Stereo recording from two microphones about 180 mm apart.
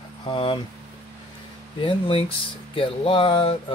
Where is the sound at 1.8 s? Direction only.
30° left (ahead or behind).